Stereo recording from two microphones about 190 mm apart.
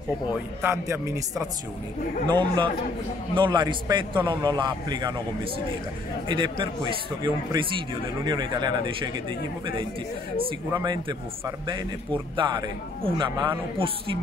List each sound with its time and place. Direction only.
0.6 s speech: 10° right (ahead or behind)
2.2 s a man's voice: 25° right (ahead or behind)
10.7 s a man's voice: 20° right (ahead or behind)